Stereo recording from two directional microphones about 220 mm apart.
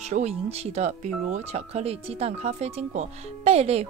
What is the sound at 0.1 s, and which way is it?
Speech, 30° right (ahead or behind).